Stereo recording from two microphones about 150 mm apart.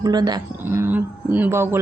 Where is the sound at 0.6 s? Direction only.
15° right (ahead or behind).